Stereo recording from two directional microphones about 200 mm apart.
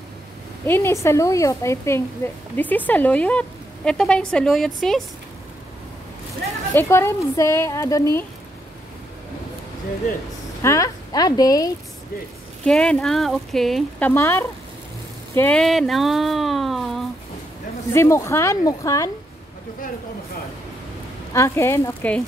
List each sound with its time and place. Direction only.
0.7 s speech: 10° left (ahead or behind)
6.7 s speech: 10° left (ahead or behind)
10.6 s speech: 15° left (ahead or behind)
12.6 s speech: 5° left (ahead or behind)
17.9 s speech: 15° left (ahead or behind)
21.3 s speech: 15° left (ahead or behind)